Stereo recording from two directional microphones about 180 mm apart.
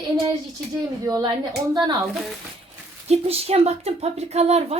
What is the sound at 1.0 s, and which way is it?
Speech, 20° right (ahead or behind).